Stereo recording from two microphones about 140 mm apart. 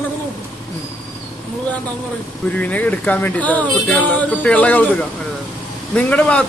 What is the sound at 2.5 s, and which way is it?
Speech, 10° left (ahead or behind).